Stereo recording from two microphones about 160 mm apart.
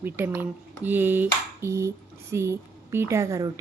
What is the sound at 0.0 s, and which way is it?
A woman's voice, 15° right (ahead or behind).